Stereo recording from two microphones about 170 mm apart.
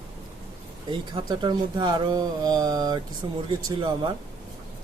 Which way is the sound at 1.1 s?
25° right (ahead or behind).